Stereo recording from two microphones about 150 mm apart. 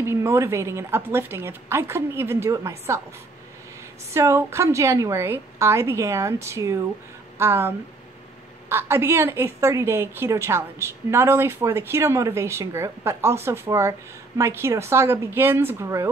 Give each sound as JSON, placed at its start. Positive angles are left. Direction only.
{"t": 0.0, "sound": "a woman's voice", "side_deg": -20}
{"t": 4.1, "sound": "a woman's voice", "side_deg": -20}